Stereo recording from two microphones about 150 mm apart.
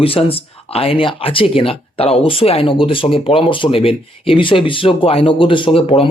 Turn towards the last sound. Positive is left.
turn(degrees=40)  # may be behind; listen again after turning